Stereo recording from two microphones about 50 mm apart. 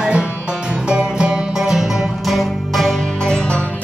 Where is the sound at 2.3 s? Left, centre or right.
Centre.